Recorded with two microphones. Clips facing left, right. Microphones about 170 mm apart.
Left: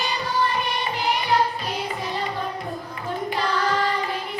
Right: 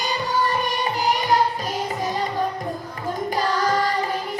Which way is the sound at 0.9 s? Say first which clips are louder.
Right 2 dB; 45° right (ahead or behind).